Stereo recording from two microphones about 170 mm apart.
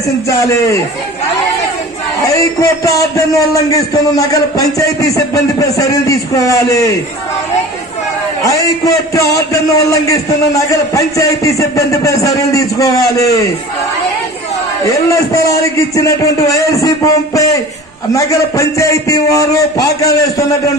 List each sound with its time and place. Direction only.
0.3 s a man's voice: 20° left (ahead or behind)
2.2 s a man's voice: 20° left (ahead or behind)
8.4 s a man's voice: 20° left (ahead or behind)
14.9 s a man's voice: 20° left (ahead or behind)